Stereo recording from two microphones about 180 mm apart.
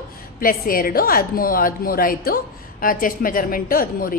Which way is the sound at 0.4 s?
50° left (ahead or behind).